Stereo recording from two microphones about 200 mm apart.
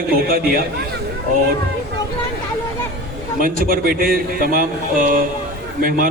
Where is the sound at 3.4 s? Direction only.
45° right (ahead or behind).